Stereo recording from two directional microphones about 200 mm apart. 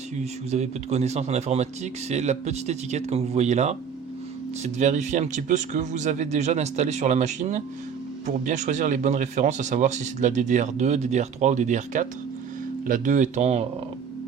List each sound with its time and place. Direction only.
0.5 s speech: 35° right (ahead or behind)